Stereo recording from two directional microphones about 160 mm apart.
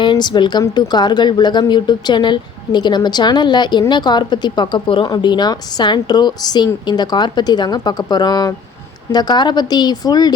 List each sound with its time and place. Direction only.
0.0 s a woman's voice: 25° left (ahead or behind)